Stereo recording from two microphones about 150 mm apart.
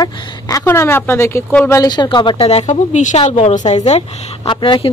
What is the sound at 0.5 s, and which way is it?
Speech, 15° left (ahead or behind).